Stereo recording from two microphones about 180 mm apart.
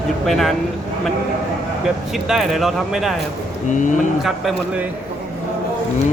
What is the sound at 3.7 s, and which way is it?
Speech, 45° left (ahead or behind).